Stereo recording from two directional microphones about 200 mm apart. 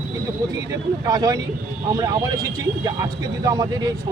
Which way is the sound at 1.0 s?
20° right (ahead or behind).